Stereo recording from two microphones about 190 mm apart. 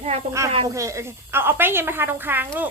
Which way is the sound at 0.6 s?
15° right (ahead or behind).